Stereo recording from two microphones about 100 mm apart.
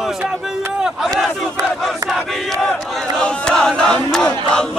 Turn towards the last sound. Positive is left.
turn(degrees=10)  # may be behind; listen again after turning